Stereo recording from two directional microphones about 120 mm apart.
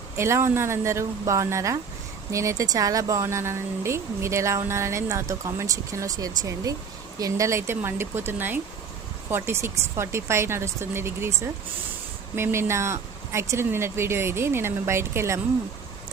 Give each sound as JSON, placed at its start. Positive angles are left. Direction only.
{"t": 0.2, "sound": "speech", "side_deg": -20}
{"t": 12.4, "sound": "speech", "side_deg": -20}